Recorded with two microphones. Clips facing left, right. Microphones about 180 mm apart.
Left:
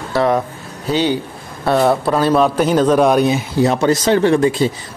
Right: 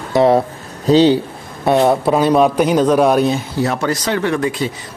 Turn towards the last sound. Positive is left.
turn(degrees=30)  # may be behind; listen again after turning